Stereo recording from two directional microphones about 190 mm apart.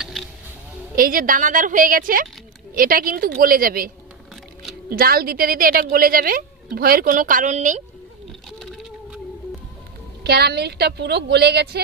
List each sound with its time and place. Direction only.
0.9 s a woman's voice: 45° right (ahead or behind)
8.5 s a sound: centre (ahead or behind)
10.2 s a woman's voice: 60° right (ahead or behind)